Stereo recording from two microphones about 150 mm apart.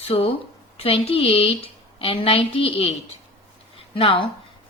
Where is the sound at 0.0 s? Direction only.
40° left (ahead or behind).